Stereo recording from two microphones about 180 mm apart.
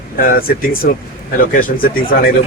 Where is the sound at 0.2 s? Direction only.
55° left (ahead or behind).